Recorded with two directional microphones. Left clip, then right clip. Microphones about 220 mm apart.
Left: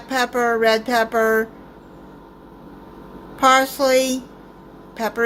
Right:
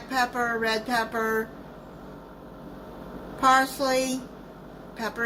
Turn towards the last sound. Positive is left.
turn(degrees=35)  # may be behind; listen again after turning